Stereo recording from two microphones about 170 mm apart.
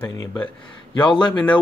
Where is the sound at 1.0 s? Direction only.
30° left (ahead or behind).